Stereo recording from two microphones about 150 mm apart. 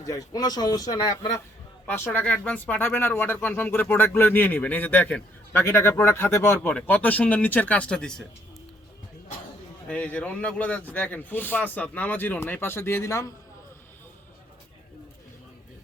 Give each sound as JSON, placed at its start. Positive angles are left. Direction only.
{"t": 0.0, "sound": "speech", "side_deg": 25}
{"t": 2.1, "sound": "speech", "side_deg": 10}
{"t": 9.9, "sound": "speech", "side_deg": 10}